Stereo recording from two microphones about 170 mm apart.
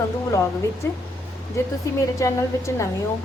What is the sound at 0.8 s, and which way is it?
A woman's voice, 15° left (ahead or behind).